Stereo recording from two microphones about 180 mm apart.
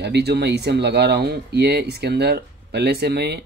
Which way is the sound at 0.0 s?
65° right (ahead or behind).